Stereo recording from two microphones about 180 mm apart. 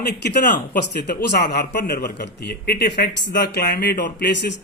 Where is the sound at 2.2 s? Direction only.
65° left (ahead or behind).